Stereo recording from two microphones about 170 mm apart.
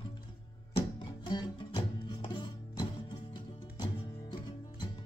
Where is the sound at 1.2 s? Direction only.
30° left (ahead or behind).